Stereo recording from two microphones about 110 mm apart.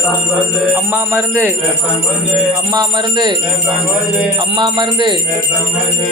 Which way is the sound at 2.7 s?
40° right (ahead or behind).